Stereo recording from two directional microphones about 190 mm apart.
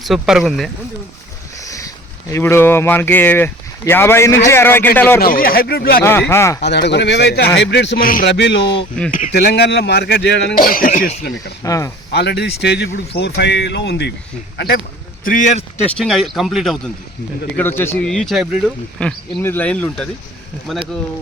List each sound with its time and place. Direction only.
0.0 s speech: centre (ahead or behind)
1.5 s a sound: 15° left (ahead or behind)
2.3 s speech: 15° left (ahead or behind)
5.2 s speech: 50° left (ahead or behind)
6.0 s speech: 10° left (ahead or behind)
6.6 s speech: 65° left (ahead or behind); by 8.3 s 45° left (ahead or behind)
8.3 s speech: 70° left (ahead or behind)
10.5 s speech: 50° left (ahead or behind)
11.6 s speech: 15° left (ahead or behind)
12.1 s speech: 60° left (ahead or behind)
15.2 s a man's voice: 45° left (ahead or behind)
16.0 s speech: centre (ahead or behind)
17.6 s speech: 10° left (ahead or behind)